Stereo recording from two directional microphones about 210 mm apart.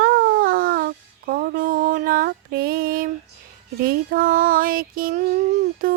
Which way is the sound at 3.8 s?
45° right (ahead or behind).